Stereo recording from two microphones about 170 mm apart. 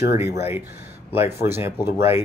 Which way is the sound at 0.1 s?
15° right (ahead or behind).